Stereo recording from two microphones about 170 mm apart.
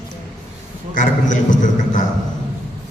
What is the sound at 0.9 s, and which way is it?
A man's voice, 50° left (ahead or behind).